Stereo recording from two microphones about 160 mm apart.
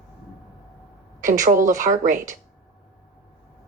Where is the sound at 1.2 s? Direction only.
55° right (ahead or behind).